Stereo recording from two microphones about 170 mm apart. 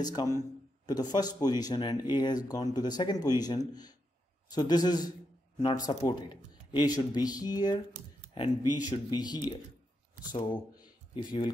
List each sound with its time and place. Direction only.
0.0 s speech: 25° left (ahead or behind)